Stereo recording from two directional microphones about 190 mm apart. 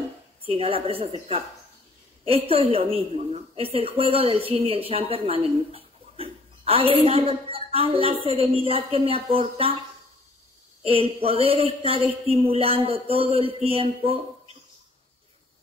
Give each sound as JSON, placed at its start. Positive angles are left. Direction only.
{"t": 0.5, "sound": "a woman's voice", "side_deg": -30}
{"t": 10.8, "sound": "a woman's voice", "side_deg": -30}